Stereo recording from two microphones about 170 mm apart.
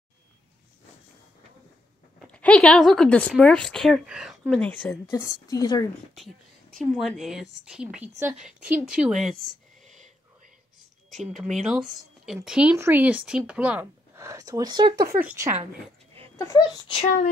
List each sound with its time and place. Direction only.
2.2 s a woman's voice: 5° left (ahead or behind)
5.1 s speech: 20° left (ahead or behind)
6.1 s a woman's voice: centre (ahead or behind)
9.8 s whispering: 45° right (ahead or behind)
11.6 s a woman's voice: centre (ahead or behind); by 15.0 s 25° right (ahead or behind)
15.1 s speech: 15° right (ahead or behind)
16.3 s speech: 20° left (ahead or behind)